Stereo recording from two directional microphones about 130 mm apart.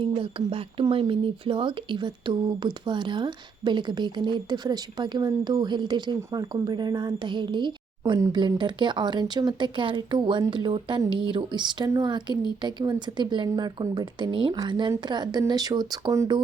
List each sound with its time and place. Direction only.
0.0 s speech: 45° right (ahead or behind)